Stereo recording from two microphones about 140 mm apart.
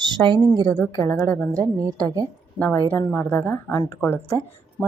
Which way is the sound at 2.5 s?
10° left (ahead or behind).